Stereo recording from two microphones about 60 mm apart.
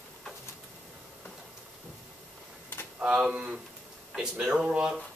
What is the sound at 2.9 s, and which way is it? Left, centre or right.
Speech, centre.